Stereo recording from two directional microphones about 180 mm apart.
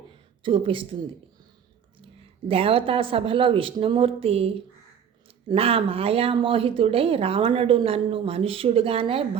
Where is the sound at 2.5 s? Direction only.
30° right (ahead or behind).